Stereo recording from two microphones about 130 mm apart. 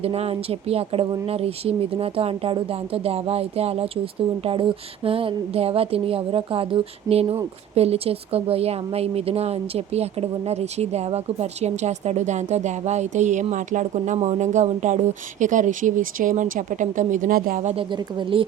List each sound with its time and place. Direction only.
0.0 s speech: 50° right (ahead or behind); by 17.7 s 80° right
17.7 s speech: 40° right (ahead or behind)